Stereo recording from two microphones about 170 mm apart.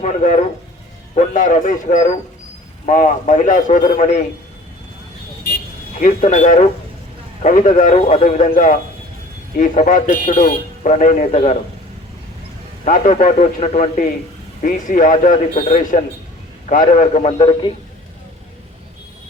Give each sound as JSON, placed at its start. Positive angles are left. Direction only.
{"t": 0.0, "sound": "speech", "side_deg": 45}
{"t": 6.0, "sound": "speech", "side_deg": 45}
{"t": 12.8, "sound": "speech", "side_deg": 45}